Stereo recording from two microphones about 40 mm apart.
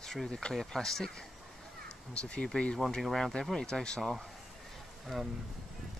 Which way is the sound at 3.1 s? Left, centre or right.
Centre.